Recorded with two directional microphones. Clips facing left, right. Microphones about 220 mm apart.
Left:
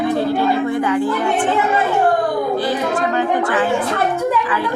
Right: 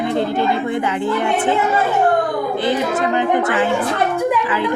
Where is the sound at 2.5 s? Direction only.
20° right (ahead or behind).